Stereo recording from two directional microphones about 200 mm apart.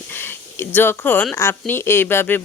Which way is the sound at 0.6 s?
10° left (ahead or behind).